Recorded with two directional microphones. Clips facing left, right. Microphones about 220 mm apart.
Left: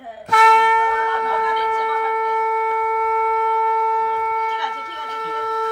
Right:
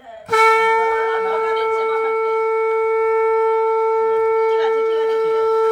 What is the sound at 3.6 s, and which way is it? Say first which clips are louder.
Shofar: right 7 dB; 50° right (ahead or behind).